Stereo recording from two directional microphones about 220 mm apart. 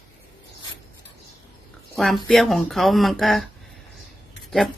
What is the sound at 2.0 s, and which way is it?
Speech, centre (ahead or behind).